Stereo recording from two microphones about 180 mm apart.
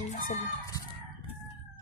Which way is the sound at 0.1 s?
50° left (ahead or behind).